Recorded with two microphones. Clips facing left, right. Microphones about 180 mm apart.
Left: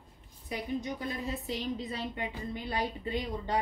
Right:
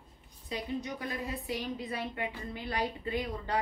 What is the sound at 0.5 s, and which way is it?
A woman's voice, 20° left (ahead or behind).